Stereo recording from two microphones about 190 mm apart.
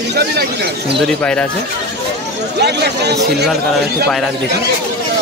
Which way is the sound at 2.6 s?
60° right (ahead or behind).